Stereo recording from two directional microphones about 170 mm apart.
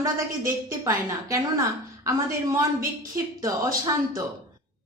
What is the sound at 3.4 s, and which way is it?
Speech, 20° right (ahead or behind).